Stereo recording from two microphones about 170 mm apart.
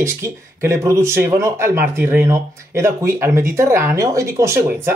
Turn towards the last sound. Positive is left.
turn(degrees=-15)  # may be behind; listen again after turning